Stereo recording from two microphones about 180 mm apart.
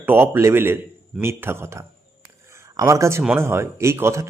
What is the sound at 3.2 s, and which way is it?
Speech, 15° right (ahead or behind).